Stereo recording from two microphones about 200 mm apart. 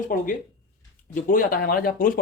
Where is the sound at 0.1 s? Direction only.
45° left (ahead or behind).